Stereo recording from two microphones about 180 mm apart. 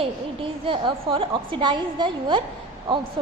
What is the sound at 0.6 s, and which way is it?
A woman's voice, 25° right (ahead or behind).